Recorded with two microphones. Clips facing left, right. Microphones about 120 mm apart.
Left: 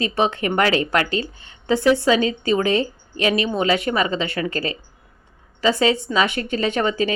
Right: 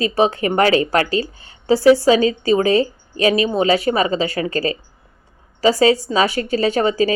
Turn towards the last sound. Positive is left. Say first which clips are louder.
# right 4 dB
turn(degrees=-35)  # may be behind; listen again after turning